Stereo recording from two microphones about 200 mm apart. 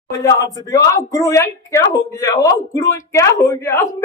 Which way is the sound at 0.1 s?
15° left (ahead or behind).